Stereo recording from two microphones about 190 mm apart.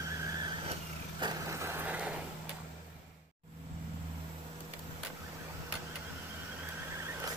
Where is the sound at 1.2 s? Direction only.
15° right (ahead or behind).